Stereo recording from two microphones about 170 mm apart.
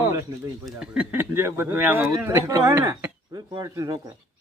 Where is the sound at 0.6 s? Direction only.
5° right (ahead or behind).